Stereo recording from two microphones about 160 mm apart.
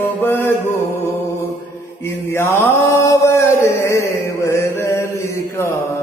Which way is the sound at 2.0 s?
15° left (ahead or behind).